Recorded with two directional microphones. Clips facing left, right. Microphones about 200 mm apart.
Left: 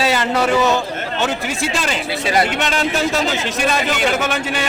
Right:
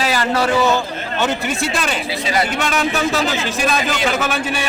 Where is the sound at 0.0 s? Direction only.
25° left (ahead or behind).